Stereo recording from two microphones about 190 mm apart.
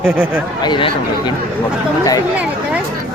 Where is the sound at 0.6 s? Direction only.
25° left (ahead or behind).